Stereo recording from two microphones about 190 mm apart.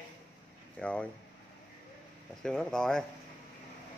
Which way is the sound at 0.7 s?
5° left (ahead or behind).